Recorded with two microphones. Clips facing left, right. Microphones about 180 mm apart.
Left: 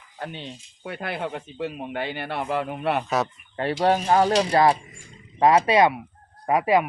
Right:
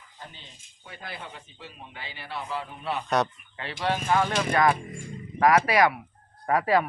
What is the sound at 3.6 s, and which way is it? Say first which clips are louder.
Speech: left 8 dB; 45° left (ahead or behind).